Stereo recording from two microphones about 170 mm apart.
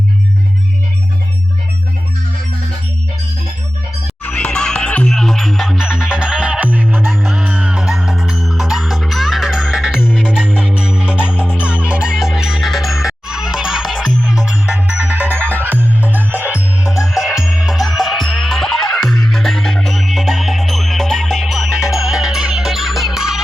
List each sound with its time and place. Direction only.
4.2 s music: 5° left (ahead or behind); by 15.8 s 10° right (ahead or behind)
15.8 s music: 10° left (ahead or behind)
17.2 s music: centre (ahead or behind)